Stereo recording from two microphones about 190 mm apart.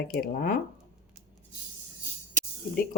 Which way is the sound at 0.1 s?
50° left (ahead or behind).